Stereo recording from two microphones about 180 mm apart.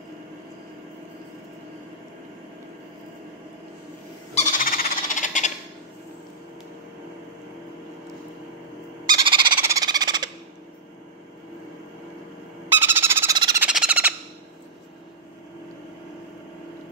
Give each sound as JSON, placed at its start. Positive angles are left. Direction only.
{"t": 4.4, "sound": "squeal", "side_deg": 45}
{"t": 9.0, "sound": "frog", "side_deg": -25}
{"t": 12.6, "sound": "a sound", "side_deg": -15}
{"t": 13.6, "sound": "squeal", "side_deg": -5}